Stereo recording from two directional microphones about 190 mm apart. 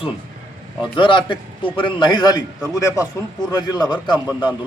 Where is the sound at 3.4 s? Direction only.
20° left (ahead or behind).